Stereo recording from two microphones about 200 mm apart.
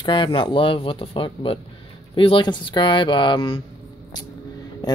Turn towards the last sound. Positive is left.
turn(degrees=20)  # may be behind; listen again after turning